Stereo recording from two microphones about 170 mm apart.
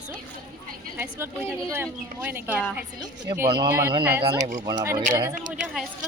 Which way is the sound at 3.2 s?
25° right (ahead or behind).